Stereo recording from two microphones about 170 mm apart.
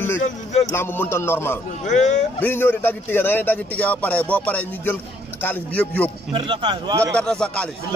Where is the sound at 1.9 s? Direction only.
45° left (ahead or behind).